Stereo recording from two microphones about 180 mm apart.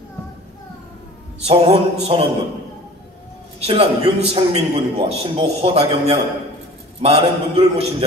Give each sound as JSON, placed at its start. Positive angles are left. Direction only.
{"t": 1.4, "sound": "a man's voice", "side_deg": -30}
{"t": 3.5, "sound": "a man's voice", "side_deg": -35}